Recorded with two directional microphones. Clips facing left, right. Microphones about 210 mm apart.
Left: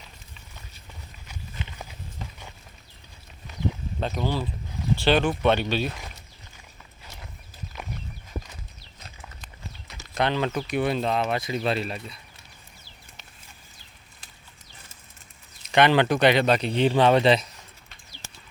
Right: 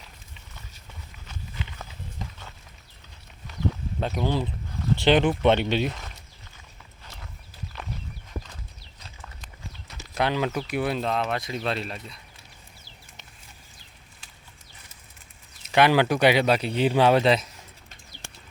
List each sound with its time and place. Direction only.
1.3 s walk: 15° left (ahead or behind)
4.0 s speech: 15° right (ahead or behind)
9.0 s horse: 20° left (ahead or behind)
10.2 s speech: 5° right (ahead or behind)
15.6 s speech: 5° right (ahead or behind)